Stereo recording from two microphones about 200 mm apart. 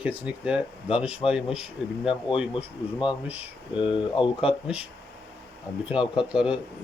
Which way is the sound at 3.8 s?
25° left (ahead or behind).